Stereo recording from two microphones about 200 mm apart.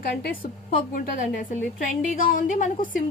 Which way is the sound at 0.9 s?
40° left (ahead or behind).